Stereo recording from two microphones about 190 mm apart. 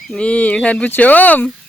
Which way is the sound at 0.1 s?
5° left (ahead or behind).